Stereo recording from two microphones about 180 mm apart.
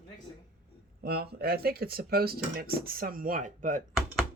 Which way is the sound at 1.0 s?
60° right (ahead or behind).